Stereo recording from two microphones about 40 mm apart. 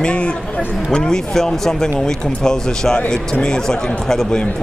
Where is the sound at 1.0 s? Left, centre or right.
Centre.